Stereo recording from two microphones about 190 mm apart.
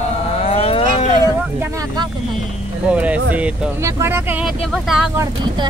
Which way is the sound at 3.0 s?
5° right (ahead or behind).